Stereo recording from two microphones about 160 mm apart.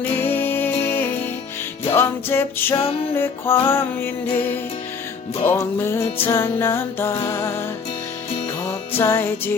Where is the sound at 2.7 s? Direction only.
35° left (ahead or behind).